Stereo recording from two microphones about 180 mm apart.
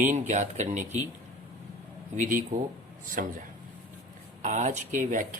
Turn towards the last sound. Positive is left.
turn(degrees=-45)  # may be behind; listen again after turning